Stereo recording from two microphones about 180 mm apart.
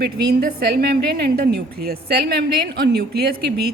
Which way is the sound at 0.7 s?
60° right (ahead or behind).